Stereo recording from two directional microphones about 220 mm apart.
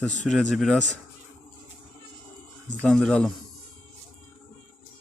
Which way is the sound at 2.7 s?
5° left (ahead or behind).